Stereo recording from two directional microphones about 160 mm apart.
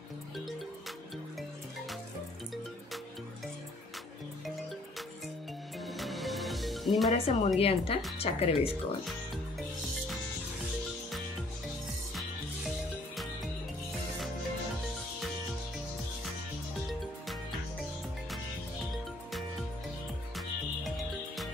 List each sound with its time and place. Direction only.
5.8 s music: centre (ahead or behind)
7.1 s speech: 40° left (ahead or behind)
8.6 s speech: centre (ahead or behind)
17.0 s music: centre (ahead or behind)